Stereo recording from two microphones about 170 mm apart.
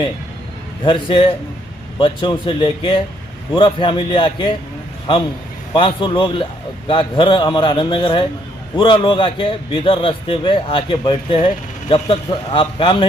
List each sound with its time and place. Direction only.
0.9 s a man's voice: 30° left (ahead or behind)
5.7 s a man's voice: 30° left (ahead or behind)